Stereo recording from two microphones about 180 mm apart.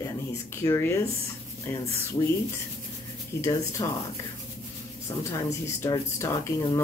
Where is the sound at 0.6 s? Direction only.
15° left (ahead or behind).